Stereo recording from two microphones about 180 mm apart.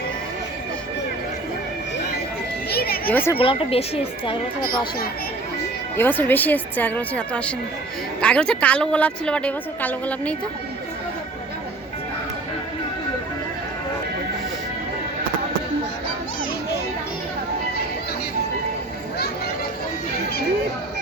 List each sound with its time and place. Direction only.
2.6 s a sound: 60° left (ahead or behind)
3.1 s a woman's voice: 10° left (ahead or behind)
3.3 s speech: 30° left (ahead or behind)
6.0 s a woman's voice: 10° left (ahead or behind)